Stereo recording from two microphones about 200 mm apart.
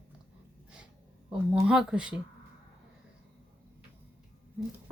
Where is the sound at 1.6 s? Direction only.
5° right (ahead or behind).